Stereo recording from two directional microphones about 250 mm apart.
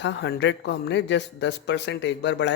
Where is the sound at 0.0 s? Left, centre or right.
Left.